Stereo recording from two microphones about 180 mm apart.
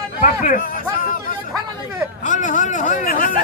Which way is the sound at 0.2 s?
50° left (ahead or behind).